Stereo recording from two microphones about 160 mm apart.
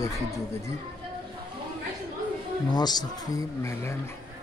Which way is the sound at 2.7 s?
25° left (ahead or behind).